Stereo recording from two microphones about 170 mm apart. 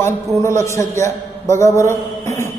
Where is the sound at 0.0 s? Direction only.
15° left (ahead or behind).